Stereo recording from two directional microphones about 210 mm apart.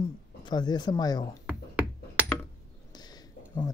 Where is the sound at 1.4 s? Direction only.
5° right (ahead or behind).